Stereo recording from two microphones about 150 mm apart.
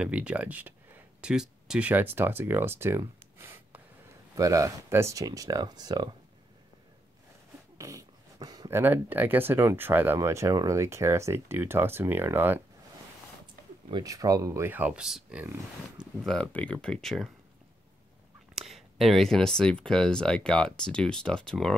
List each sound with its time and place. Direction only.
0.0 s speech: 10° right (ahead or behind); by 6.0 s 25° right (ahead or behind)
7.7 s speech: 20° right (ahead or behind)
13.8 s speech: 25° right (ahead or behind); by 15.4 s 5° right (ahead or behind)
16.2 s speech: 5° left (ahead or behind)
18.5 s speech: centre (ahead or behind)